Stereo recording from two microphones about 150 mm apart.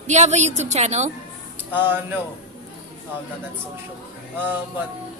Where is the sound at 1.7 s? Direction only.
15° right (ahead or behind).